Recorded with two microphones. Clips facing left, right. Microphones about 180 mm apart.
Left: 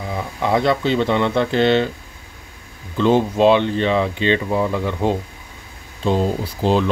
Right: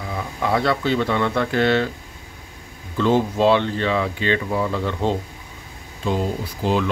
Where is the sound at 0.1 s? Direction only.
20° left (ahead or behind).